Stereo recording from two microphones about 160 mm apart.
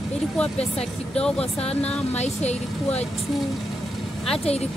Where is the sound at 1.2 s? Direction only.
5° left (ahead or behind).